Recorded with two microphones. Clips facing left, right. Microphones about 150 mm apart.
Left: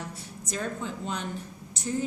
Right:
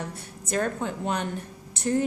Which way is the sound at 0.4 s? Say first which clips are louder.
Right 6 dB; 60° right (ahead or behind).